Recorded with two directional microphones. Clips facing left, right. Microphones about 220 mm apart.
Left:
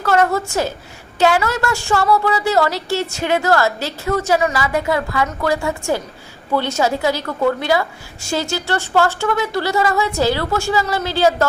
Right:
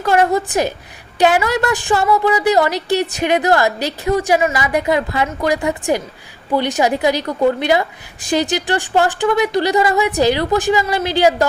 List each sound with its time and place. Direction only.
0.0 s a woman's voice: 15° right (ahead or behind)